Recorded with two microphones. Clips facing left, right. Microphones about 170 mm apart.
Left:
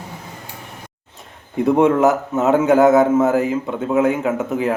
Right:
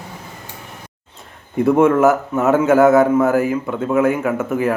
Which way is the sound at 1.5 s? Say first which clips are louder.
Right 1 dB; 20° left (ahead or behind).